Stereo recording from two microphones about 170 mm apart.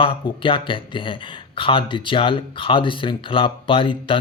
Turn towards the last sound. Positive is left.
turn(degrees=30)  # may be behind; listen again after turning